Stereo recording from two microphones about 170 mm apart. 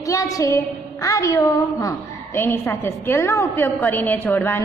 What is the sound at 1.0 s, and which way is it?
A woman's voice, 20° left (ahead or behind).